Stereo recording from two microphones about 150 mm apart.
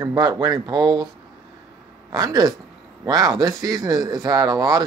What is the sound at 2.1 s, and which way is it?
Speech, 25° right (ahead or behind).